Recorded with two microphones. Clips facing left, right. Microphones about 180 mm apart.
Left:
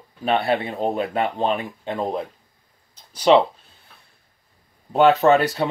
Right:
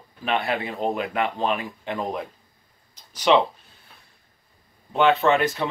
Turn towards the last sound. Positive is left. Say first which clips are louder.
# left 4 dB
turn(degrees=35)  # may be behind; listen again after turning